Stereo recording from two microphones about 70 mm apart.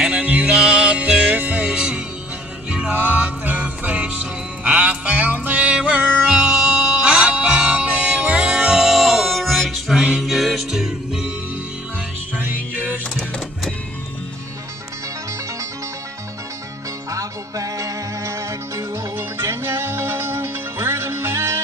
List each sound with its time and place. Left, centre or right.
0.0 s music: centre
17.1 s music: right